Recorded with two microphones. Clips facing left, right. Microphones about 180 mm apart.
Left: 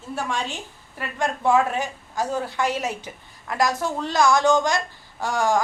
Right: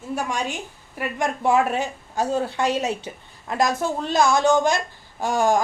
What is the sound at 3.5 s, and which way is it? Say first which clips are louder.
Speech: right 1 dB; 20° right (ahead or behind).